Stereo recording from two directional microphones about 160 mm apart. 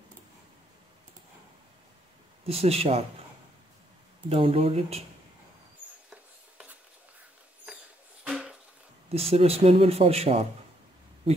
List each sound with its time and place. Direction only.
2.4 s speech: 40° right (ahead or behind)
4.3 s speech: 35° right (ahead or behind)
7.6 s a sound: 5° right (ahead or behind)
9.1 s speech: 40° right (ahead or behind)